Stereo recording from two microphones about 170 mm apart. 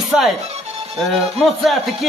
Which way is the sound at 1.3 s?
Centre (ahead or behind).